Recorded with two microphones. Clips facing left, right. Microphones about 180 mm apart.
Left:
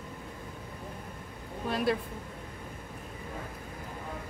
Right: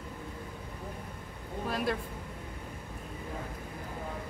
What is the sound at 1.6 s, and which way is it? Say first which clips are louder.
Speech: left 3 dB; centre (ahead or behind).